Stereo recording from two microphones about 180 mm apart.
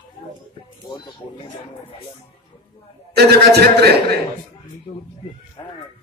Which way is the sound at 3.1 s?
65° right (ahead or behind).